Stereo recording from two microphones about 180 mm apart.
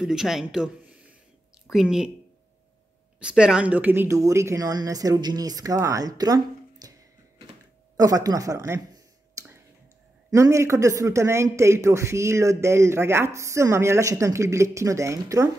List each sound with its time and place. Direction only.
0.0 s speech: 5° right (ahead or behind)
3.2 s speech: 5° right (ahead or behind); by 6.9 s 20° right (ahead or behind)
8.0 s speech: 20° right (ahead or behind)
9.3 s a sound: 20° right (ahead or behind)
10.3 s speech: 15° right (ahead or behind)